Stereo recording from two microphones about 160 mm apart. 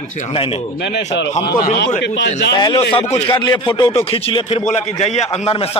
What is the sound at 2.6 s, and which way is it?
A man's voice, 30° left (ahead or behind).